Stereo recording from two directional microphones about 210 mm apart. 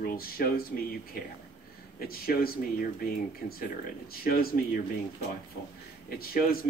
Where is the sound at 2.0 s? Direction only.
45° left (ahead or behind).